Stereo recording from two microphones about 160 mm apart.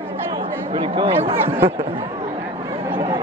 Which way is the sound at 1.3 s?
15° right (ahead or behind).